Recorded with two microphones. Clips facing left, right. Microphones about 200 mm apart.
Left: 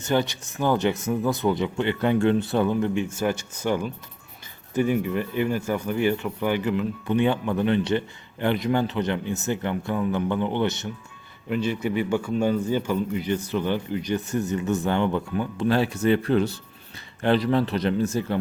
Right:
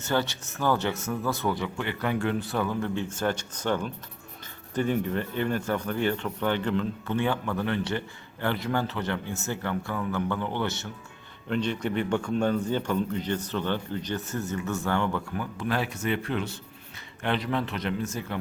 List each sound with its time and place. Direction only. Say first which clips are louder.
0.0 s speech: left 4 dB; 15° left (ahead or behind)
11.4 s speech: left 3 dB; 5° left (ahead or behind); by 18.3 s 30° left (ahead or behind)